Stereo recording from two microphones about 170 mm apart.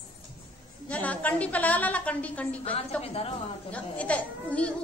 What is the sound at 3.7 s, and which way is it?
A woman's voice, 10° left (ahead or behind).